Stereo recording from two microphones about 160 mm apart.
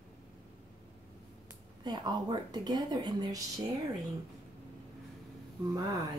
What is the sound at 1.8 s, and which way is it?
Speech, 25° right (ahead or behind).